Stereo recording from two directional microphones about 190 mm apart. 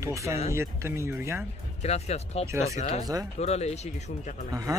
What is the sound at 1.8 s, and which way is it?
Speech, 35° left (ahead or behind).